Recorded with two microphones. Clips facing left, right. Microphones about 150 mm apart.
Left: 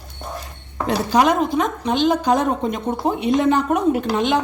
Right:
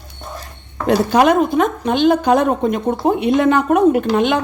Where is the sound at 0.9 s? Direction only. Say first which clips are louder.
Right 4 dB; 60° right (ahead or behind).